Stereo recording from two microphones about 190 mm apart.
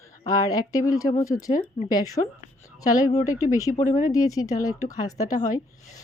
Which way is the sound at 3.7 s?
40° left (ahead or behind).